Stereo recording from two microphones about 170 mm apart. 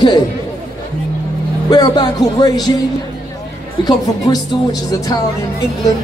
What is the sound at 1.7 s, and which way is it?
Speech, 25° left (ahead or behind).